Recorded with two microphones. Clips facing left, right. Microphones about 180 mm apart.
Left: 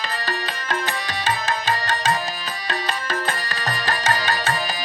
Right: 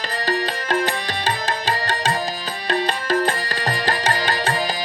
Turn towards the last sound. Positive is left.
turn(degrees=-35)  # may be behind; listen again after turning